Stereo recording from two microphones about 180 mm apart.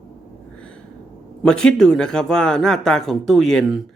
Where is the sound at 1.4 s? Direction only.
5° left (ahead or behind).